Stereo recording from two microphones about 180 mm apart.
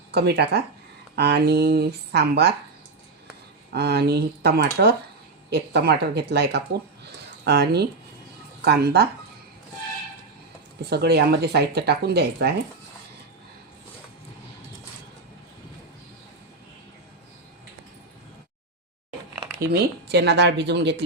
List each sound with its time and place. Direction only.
0.1 s speech: 65° right (ahead or behind)
3.7 s speech: 65° right (ahead or behind)
10.8 s speech: 65° right (ahead or behind)
19.5 s speech: 65° right (ahead or behind)